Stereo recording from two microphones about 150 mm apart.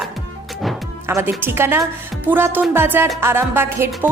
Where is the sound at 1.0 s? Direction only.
15° right (ahead or behind).